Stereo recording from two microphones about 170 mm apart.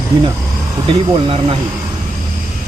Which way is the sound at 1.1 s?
35° right (ahead or behind).